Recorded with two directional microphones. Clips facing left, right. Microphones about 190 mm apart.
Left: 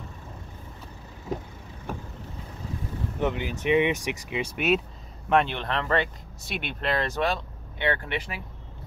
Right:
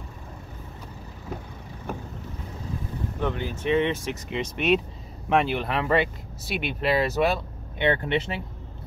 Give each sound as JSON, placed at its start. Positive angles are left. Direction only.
{"t": 3.2, "sound": "speech", "side_deg": 15}
{"t": 5.3, "sound": "speech", "side_deg": -5}
{"t": 7.8, "sound": "speech", "side_deg": -20}